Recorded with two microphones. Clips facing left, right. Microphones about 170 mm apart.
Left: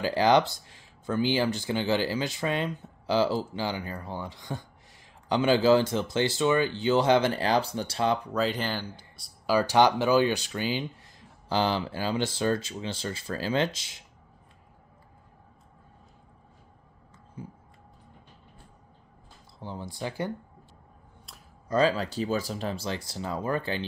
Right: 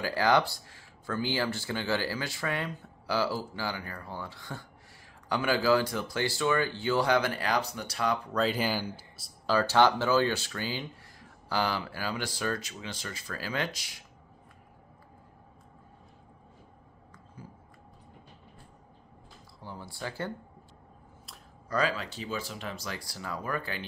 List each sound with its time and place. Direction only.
0.0 s speech: 20° left (ahead or behind)
8.3 s speech: centre (ahead or behind)
8.5 s speech: 10° right (ahead or behind)
9.5 s speech: 15° left (ahead or behind)
17.4 s a sound: 20° left (ahead or behind)
19.6 s speech: 20° left (ahead or behind)
21.6 s speech: 30° left (ahead or behind)